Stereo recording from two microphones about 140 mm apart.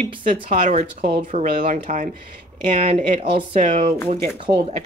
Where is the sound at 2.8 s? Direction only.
45° right (ahead or behind).